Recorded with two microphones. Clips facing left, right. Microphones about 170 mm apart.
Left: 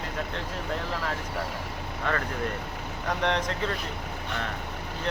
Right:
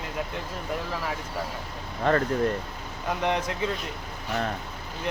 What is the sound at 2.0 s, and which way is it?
Speech, 35° right (ahead or behind).